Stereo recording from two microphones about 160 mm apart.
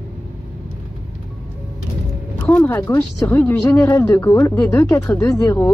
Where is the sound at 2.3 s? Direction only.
10° left (ahead or behind).